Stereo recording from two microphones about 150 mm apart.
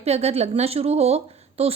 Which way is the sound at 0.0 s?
45° right (ahead or behind).